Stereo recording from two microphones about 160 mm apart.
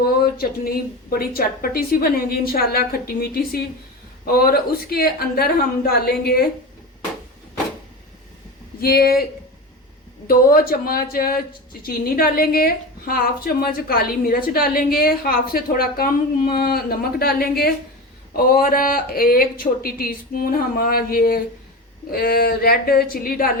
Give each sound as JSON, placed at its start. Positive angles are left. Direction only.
{"t": 0.2, "sound": "a woman's voice", "side_deg": 70}
{"t": 8.8, "sound": "a woman's voice", "side_deg": 70}
{"t": 10.2, "sound": "a woman's voice", "side_deg": 65}